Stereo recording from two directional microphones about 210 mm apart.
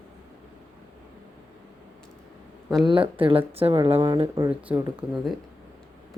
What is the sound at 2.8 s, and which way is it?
Speech, 25° right (ahead or behind).